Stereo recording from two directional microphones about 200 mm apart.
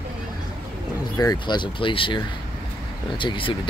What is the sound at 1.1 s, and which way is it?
Speech, 20° left (ahead or behind).